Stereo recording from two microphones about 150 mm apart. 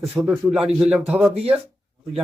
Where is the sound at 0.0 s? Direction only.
5° right (ahead or behind).